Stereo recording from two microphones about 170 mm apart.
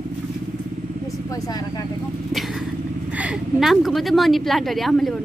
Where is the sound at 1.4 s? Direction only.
20° left (ahead or behind).